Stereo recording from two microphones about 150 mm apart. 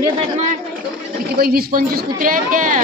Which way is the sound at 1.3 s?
90° right.